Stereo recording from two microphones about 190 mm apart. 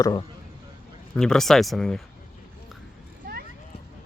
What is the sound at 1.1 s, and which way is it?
Speech, 5° left (ahead or behind).